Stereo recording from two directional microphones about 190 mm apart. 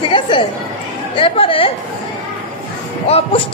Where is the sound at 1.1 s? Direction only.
30° left (ahead or behind).